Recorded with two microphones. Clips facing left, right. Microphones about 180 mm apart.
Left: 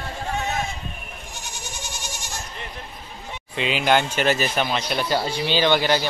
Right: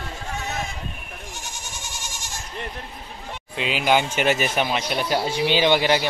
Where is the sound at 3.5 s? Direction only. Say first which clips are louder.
Left 1 dB; 5° right (ahead or behind).